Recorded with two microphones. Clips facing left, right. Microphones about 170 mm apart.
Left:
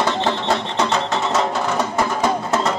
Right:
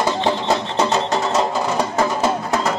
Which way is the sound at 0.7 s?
35° right (ahead or behind).